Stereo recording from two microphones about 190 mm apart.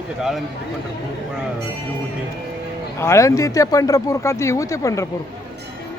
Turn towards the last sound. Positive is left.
turn(degrees=15)  # may be behind; listen again after turning